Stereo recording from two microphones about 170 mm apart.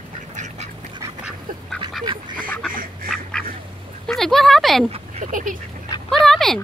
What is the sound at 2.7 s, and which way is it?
Duck, 55° right (ahead or behind).